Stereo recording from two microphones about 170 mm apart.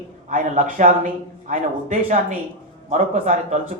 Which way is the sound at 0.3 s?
50° right (ahead or behind).